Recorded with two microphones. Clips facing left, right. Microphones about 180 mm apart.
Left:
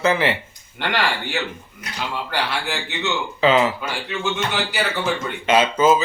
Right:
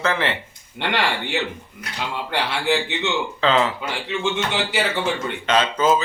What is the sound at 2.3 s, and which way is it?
Speech, 25° right (ahead or behind).